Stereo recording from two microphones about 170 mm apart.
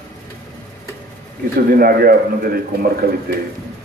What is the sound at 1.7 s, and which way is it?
A man's voice, 60° right (ahead or behind).